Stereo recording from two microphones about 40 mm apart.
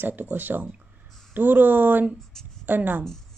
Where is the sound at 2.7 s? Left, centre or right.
Right.